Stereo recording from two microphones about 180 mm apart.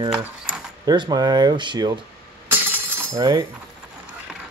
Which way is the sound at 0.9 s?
25° right (ahead or behind).